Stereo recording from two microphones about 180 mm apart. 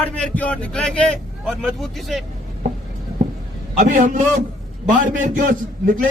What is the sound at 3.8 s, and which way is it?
A man's voice, 45° right (ahead or behind).